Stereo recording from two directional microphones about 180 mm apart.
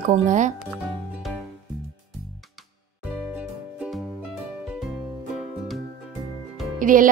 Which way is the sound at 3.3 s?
5° right (ahead or behind).